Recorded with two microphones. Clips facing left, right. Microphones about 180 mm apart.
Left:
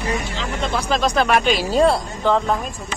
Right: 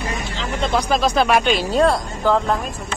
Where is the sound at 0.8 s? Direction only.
10° right (ahead or behind).